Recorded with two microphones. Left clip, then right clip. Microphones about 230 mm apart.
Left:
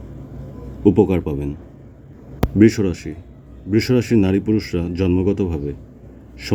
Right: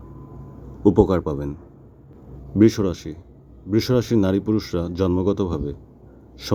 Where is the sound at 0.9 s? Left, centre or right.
Centre.